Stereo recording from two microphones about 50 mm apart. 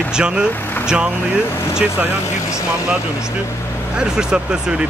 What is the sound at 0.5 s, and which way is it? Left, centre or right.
Speech, left.